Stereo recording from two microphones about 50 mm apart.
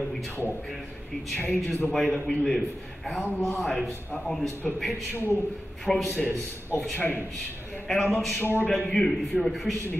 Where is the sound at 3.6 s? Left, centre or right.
Centre.